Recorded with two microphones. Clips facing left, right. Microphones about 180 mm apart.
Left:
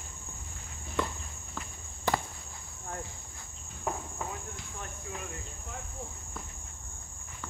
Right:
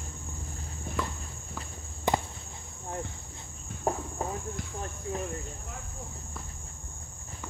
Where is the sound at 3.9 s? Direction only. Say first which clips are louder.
Right 5 dB; 35° right (ahead or behind).